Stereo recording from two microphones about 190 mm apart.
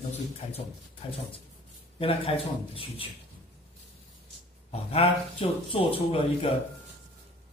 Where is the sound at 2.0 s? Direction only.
30° left (ahead or behind).